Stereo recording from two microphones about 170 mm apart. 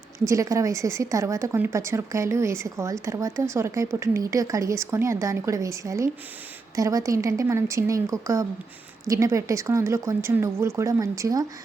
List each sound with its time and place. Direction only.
0.3 s speech: 20° right (ahead or behind)